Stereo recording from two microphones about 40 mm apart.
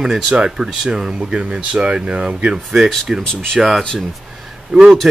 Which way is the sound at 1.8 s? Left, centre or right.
Right.